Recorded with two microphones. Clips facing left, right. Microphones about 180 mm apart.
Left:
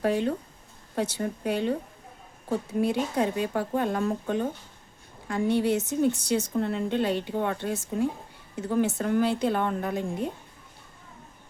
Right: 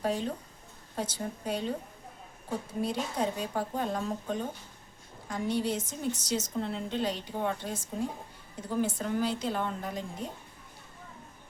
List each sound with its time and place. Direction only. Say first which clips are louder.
0.0 s a woman's voice: left 6 dB; 70° left (ahead or behind)
2.8 s a woman's voice: left 4 dB; 65° left (ahead or behind)